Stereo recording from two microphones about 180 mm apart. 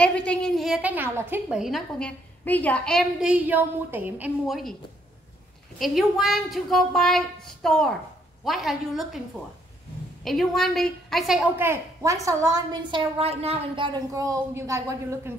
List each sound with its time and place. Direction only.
0.0 s a woman's voice: 5° left (ahead or behind)
5.8 s a woman's voice: centre (ahead or behind)
10.2 s a woman's voice: centre (ahead or behind)
11.6 s a woman's voice: 15° right (ahead or behind)
13.2 s a woman's voice: 35° right (ahead or behind)
13.9 s a woman's voice: 20° right (ahead or behind)